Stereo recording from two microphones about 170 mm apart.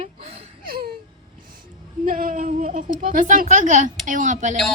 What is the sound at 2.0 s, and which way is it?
A woman's voice, 55° right (ahead or behind).